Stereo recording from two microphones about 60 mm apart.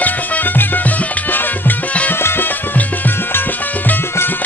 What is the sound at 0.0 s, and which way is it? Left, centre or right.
Music, left.